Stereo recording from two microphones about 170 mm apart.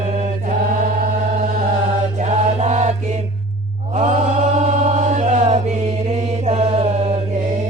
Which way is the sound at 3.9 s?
45° right (ahead or behind).